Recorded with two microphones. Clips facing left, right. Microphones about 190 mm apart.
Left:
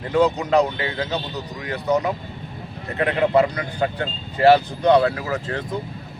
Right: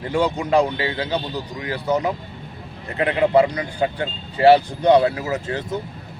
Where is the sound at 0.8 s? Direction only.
30° right (ahead or behind).